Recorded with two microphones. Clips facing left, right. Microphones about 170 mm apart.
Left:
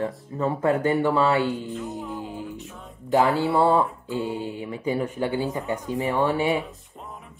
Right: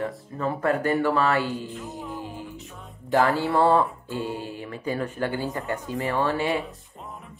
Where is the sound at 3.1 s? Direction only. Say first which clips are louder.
Left 1 dB; 20° left (ahead or behind).